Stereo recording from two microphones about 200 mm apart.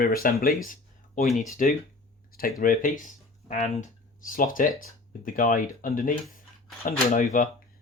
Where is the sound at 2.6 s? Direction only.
45° left (ahead or behind).